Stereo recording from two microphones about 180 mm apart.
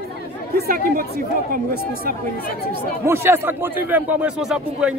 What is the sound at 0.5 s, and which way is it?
Speech, 60° right (ahead or behind).